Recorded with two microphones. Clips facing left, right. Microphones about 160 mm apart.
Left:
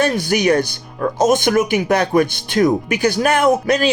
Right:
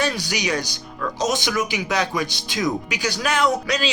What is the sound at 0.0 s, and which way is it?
Speech, 55° left (ahead or behind).